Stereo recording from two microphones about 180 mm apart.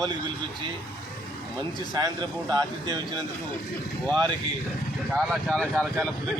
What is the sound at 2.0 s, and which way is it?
Speech, 20° right (ahead or behind).